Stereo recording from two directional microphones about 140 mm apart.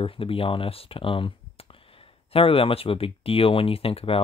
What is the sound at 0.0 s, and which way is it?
Speech, 40° left (ahead or behind).